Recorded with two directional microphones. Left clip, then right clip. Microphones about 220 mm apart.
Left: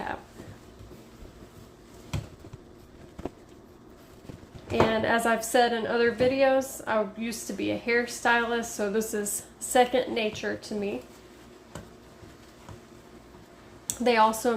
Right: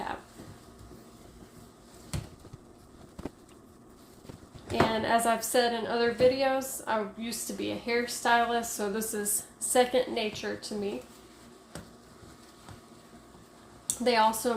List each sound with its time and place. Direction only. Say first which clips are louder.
4.7 s a woman's voice: left 2 dB; 25° left (ahead or behind)
13.8 s speech: left 3 dB; 25° left (ahead or behind)